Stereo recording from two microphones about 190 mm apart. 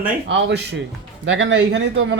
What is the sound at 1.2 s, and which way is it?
Speech, 80° right.